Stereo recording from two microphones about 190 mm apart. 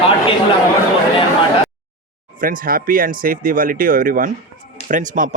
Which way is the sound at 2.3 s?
45° right (ahead or behind).